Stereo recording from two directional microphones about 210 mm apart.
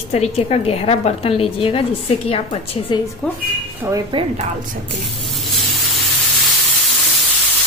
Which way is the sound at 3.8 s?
20° right (ahead or behind).